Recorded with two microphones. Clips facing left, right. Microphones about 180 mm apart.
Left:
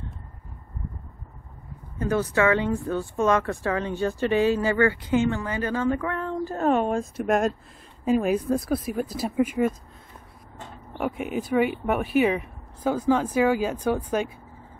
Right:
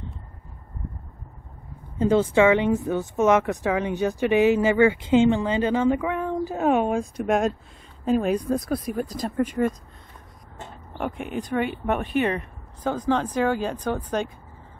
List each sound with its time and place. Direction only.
2.0 s speech: 20° right (ahead or behind); by 9.8 s 5° left (ahead or behind)
11.0 s speech: 5° left (ahead or behind)